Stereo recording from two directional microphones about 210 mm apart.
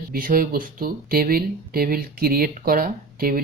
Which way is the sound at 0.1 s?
45° right (ahead or behind).